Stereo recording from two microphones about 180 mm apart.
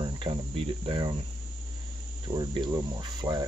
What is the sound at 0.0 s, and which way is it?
Cricket, 30° right (ahead or behind).